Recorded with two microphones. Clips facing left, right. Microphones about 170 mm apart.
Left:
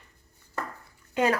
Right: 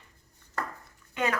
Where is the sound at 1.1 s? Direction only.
35° left (ahead or behind).